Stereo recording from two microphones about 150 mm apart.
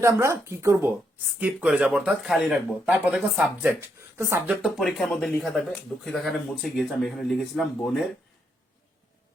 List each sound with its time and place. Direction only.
0.0 s speech: 20° right (ahead or behind)
1.4 s speech: 5° right (ahead or behind)
4.4 s speech: centre (ahead or behind)